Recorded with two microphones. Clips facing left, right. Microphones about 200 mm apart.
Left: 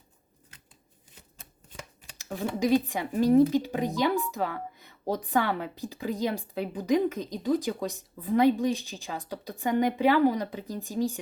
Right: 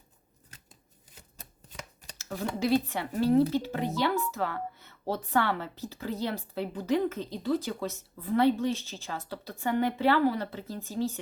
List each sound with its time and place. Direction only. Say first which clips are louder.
1.6 s shuffling cards: left 3 dB; 35° right (ahead or behind)
2.1 s speech: left 2 dB; 15° left (ahead or behind)